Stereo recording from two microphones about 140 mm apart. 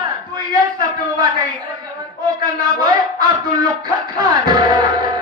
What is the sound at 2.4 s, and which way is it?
Speech, 30° right (ahead or behind).